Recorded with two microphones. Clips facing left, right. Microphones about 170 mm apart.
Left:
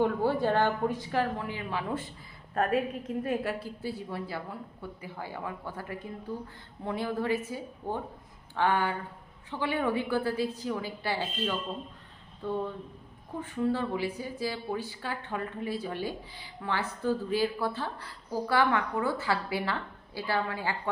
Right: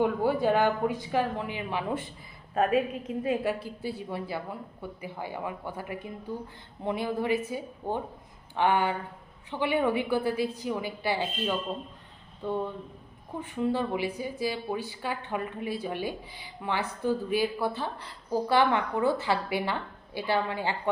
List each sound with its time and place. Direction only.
0.0 s a woman's voice: 15° right (ahead or behind)